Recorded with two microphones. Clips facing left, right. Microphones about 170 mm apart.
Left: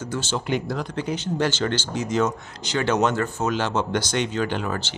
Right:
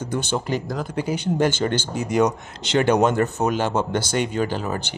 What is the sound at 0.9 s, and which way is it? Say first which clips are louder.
Speech: right 5 dB; 10° right (ahead or behind).